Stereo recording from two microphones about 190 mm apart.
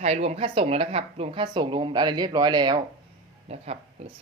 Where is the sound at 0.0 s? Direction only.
35° right (ahead or behind).